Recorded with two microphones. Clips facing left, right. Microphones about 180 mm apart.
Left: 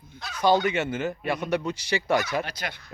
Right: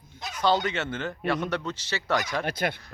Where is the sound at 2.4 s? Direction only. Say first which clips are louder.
Right 7 dB; 55° right (ahead or behind).